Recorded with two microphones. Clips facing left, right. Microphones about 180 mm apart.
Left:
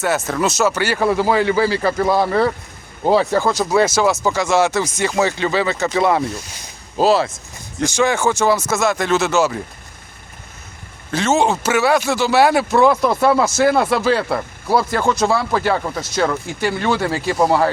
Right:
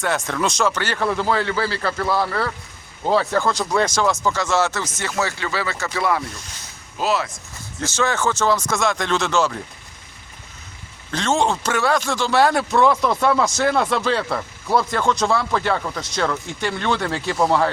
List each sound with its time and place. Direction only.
0.0 s speech: 5° left (ahead or behind); by 7.3 s 30° left (ahead or behind)
7.8 s speech: 15° left (ahead or behind)
11.1 s speech: 5° left (ahead or behind)